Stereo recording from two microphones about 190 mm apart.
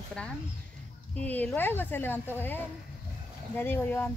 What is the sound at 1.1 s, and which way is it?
Speech, 10° left (ahead or behind).